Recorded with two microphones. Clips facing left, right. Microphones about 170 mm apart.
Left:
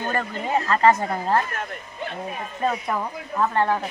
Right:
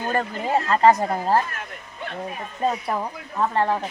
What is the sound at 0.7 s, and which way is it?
Speech, 35° right (ahead or behind).